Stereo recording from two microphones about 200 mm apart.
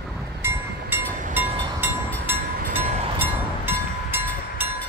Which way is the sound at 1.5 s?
25° right (ahead or behind).